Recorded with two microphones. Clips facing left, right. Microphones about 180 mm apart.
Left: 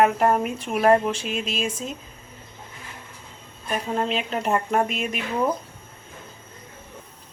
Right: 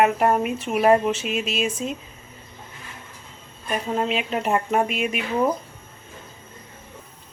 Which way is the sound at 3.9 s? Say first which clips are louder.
Right 1 dB; 5° right (ahead or behind).